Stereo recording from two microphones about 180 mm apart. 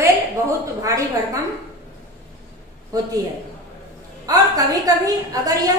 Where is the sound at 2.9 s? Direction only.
20° right (ahead or behind).